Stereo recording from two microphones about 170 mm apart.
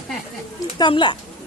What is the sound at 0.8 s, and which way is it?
Speech, 25° left (ahead or behind).